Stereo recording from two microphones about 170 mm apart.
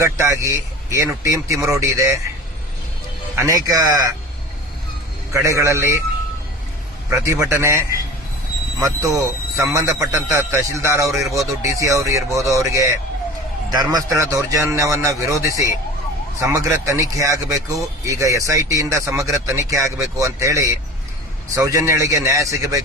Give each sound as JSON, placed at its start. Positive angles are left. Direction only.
{"t": 0.0, "sound": "speech", "side_deg": -15}
{"t": 3.3, "sound": "a man's voice", "side_deg": -20}
{"t": 5.3, "sound": "speech", "side_deg": -15}
{"t": 7.1, "sound": "speech", "side_deg": -15}